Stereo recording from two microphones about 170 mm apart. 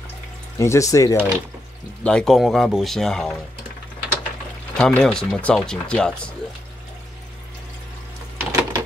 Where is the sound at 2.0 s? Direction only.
5° left (ahead or behind).